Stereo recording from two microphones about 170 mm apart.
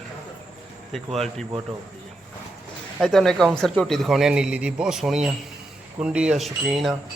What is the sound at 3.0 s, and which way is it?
A man's voice, centre (ahead or behind).